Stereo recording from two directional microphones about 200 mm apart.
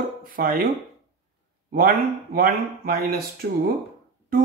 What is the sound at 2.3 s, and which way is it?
Speech, 45° right (ahead or behind).